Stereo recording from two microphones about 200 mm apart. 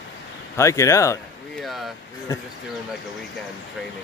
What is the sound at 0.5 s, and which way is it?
Speech, 15° left (ahead or behind).